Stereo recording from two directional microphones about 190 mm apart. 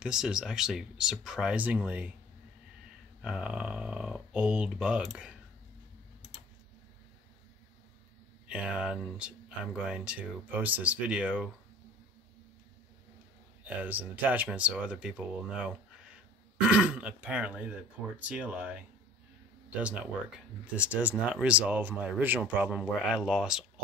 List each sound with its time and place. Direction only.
0.0 s speech: 5° right (ahead or behind)
3.2 s speech: 5° right (ahead or behind)
8.5 s speech: 5° right (ahead or behind)
13.8 s speech: 10° right (ahead or behind)